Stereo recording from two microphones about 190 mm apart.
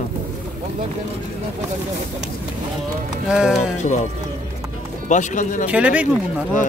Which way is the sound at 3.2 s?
5° right (ahead or behind).